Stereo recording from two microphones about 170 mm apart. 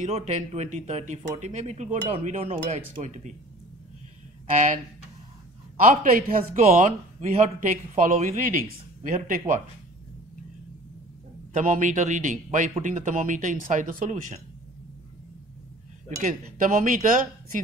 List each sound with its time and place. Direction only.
0.0 s speech: 45° right (ahead or behind)
4.5 s speech: 45° right (ahead or behind)
5.8 s speech: 55° right (ahead or behind)
11.5 s speech: 50° right (ahead or behind)
16.2 s speech: 50° right (ahead or behind)